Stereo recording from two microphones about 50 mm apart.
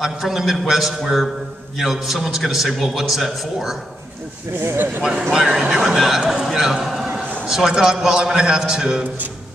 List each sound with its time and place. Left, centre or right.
0.0 s a man's voice: centre
4.6 s speech: right
5.3 s a man's voice: centre